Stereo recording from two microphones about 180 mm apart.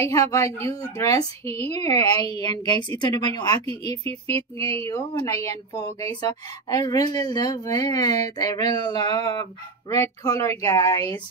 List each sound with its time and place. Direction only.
0.3 s speech: 15° left (ahead or behind)
3.6 s speech: 35° right (ahead or behind)
4.7 s speech: 15° left (ahead or behind)